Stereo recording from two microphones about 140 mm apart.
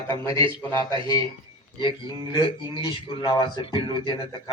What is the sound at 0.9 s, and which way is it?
Speech, 35° right (ahead or behind).